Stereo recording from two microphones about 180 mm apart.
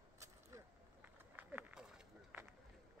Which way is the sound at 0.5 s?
15° right (ahead or behind).